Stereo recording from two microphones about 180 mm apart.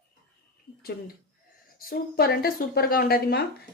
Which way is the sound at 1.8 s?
55° left (ahead or behind).